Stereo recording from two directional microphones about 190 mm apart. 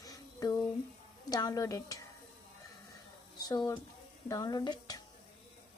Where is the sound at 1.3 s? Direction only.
20° left (ahead or behind).